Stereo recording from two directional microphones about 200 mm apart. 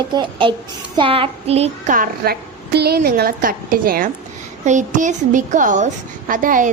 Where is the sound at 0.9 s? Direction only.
25° right (ahead or behind); by 4.1 s 45° right (ahead or behind).